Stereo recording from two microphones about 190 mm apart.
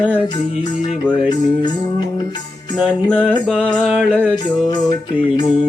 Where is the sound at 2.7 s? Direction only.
5° left (ahead or behind).